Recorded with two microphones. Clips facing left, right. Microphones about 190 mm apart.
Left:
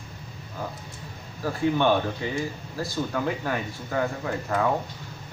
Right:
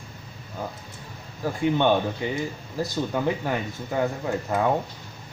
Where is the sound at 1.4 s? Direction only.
15° right (ahead or behind).